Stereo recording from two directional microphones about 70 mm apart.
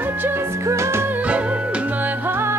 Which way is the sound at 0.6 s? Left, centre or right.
Right.